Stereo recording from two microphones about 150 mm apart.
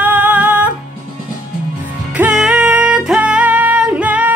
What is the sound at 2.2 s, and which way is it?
Music, 5° right (ahead or behind).